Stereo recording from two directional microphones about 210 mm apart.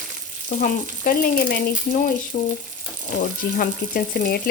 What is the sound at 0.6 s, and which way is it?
Speech, 45° left (ahead or behind).